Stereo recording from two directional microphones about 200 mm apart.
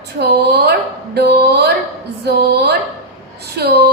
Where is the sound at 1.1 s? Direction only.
55° right (ahead or behind).